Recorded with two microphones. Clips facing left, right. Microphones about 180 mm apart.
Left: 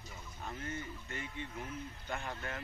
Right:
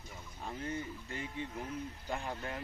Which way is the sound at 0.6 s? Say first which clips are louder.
Right 5 dB; 30° right (ahead or behind).